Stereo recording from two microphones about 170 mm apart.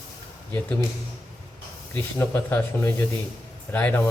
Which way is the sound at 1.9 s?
10° left (ahead or behind).